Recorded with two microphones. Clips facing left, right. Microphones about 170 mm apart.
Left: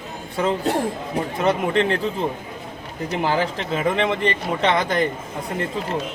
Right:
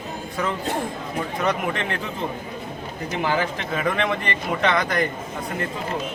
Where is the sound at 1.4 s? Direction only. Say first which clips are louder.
Left 6 dB; 30° left (ahead or behind).